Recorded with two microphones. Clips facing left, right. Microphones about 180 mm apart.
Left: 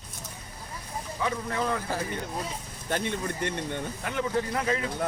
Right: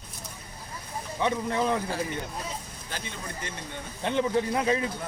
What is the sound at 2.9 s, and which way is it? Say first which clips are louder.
Speech: left 9 dB; 60° left (ahead or behind).